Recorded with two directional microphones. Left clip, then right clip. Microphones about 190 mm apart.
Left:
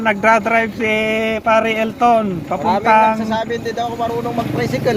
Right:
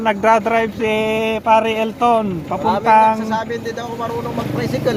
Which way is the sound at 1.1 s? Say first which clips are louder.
Right 3 dB; 25° left (ahead or behind).